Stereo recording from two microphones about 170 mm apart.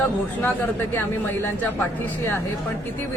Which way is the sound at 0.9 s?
10° left (ahead or behind).